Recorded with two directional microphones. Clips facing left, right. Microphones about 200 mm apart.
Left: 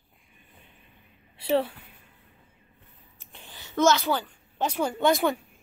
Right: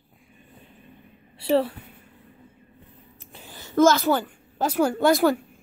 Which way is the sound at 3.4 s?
45° right (ahead or behind).